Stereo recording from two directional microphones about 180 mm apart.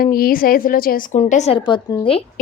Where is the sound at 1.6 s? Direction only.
25° left (ahead or behind).